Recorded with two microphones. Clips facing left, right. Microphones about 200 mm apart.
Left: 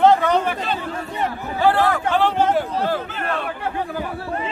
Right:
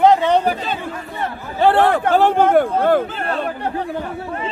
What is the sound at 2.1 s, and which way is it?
Speech, 50° right (ahead or behind).